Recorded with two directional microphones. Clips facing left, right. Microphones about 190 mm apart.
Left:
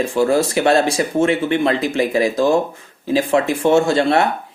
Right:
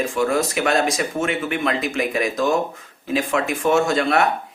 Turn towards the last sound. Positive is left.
turn(degrees=30)  # may be behind; listen again after turning